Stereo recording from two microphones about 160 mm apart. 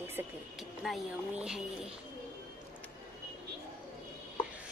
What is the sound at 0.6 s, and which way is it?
Speech, 5° right (ahead or behind).